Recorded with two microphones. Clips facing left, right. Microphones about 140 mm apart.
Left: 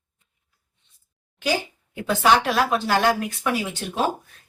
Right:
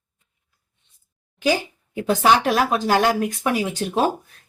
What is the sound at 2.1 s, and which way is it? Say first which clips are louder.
Speech: right 2 dB; 45° right (ahead or behind).